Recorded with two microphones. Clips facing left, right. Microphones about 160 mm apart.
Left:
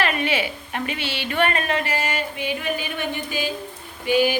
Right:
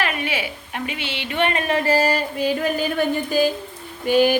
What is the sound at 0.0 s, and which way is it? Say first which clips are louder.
A woman's voice: left 2 dB; 10° right (ahead or behind).